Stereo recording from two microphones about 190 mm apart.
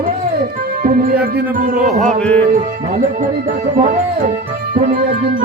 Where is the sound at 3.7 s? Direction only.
45° right (ahead or behind).